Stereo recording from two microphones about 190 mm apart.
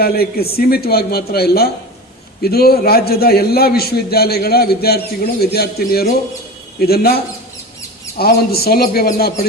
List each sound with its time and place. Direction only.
0.0 s a man's voice: 55° left (ahead or behind)
8.2 s speech: 55° left (ahead or behind)